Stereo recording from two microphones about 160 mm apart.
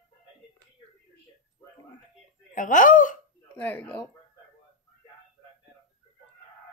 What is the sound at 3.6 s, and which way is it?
Speech, 10° left (ahead or behind).